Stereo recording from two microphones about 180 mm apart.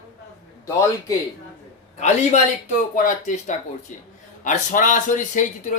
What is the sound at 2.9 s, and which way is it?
Speech, 45° left (ahead or behind).